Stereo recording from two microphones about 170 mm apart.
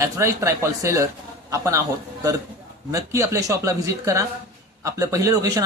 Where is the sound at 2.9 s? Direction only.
15° right (ahead or behind).